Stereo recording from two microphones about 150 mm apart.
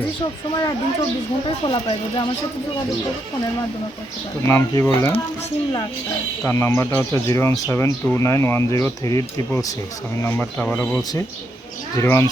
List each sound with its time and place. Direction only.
1.6 s speech: 35° left (ahead or behind)
4.4 s speech: 20° left (ahead or behind)
6.4 s speech: 15° left (ahead or behind)